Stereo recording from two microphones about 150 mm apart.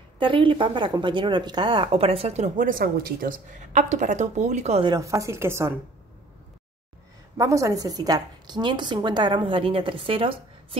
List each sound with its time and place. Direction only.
0.2 s speech: 35° right (ahead or behind)
4.8 s a woman's voice: 25° right (ahead or behind)
7.3 s a woman's voice: 20° right (ahead or behind); by 10.8 s 35° right (ahead or behind)